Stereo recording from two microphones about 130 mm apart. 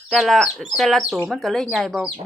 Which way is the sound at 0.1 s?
Centre (ahead or behind).